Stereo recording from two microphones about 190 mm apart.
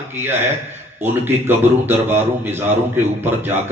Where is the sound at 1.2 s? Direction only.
10° right (ahead or behind).